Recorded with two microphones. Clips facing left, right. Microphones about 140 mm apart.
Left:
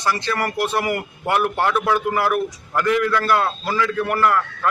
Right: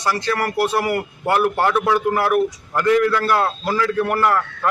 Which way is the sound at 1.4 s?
5° right (ahead or behind).